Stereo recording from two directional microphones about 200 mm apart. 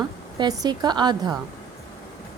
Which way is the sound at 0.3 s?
20° right (ahead or behind).